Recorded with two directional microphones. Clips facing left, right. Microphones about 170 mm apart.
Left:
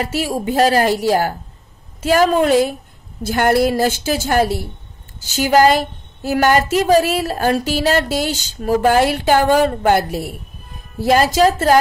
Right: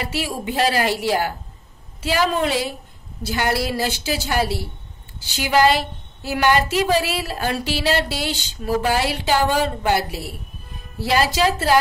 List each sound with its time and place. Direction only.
0.0 s a woman's voice: 45° left (ahead or behind)